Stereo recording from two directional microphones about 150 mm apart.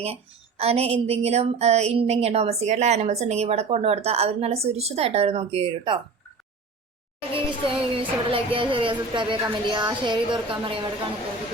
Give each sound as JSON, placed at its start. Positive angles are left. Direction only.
{"t": 0.0, "sound": "speech", "side_deg": -40}
{"t": 7.2, "sound": "music", "side_deg": -35}